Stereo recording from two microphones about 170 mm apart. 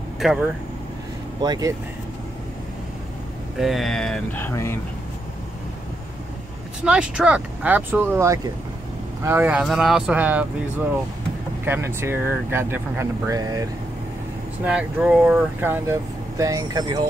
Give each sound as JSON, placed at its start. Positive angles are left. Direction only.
{"t": 0.2, "sound": "speech", "side_deg": -5}
{"t": 1.4, "sound": "speech", "side_deg": -25}
{"t": 3.5, "sound": "speech", "side_deg": 0}
{"t": 6.8, "sound": "speech", "side_deg": -5}
{"t": 14.6, "sound": "speech", "side_deg": -5}